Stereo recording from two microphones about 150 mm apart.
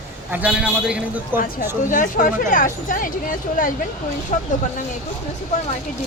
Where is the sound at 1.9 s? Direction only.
60° left (ahead or behind).